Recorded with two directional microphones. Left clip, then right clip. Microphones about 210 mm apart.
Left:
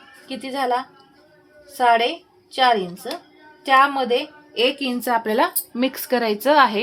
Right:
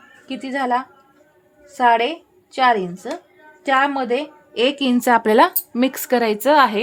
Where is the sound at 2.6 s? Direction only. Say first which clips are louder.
Right 1 dB; 30° right (ahead or behind).